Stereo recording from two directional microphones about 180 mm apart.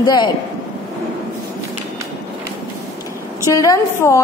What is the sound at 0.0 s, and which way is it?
Speech, 25° left (ahead or behind).